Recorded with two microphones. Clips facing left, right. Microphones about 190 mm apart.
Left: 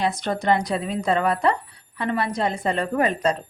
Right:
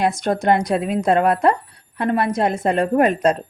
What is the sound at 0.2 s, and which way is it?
Speech, 45° right (ahead or behind).